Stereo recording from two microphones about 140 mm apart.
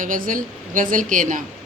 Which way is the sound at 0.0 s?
70° right (ahead or behind).